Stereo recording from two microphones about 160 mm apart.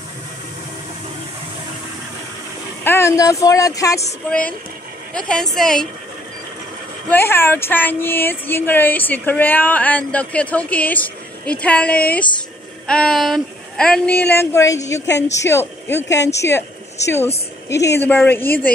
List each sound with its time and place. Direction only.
2.8 s speech: 15° left (ahead or behind)
4.3 s speech: 10° left (ahead or behind)
7.1 s speech: 15° left (ahead or behind)
15.0 s speech: 90° left
15.3 s speech: 20° left (ahead or behind)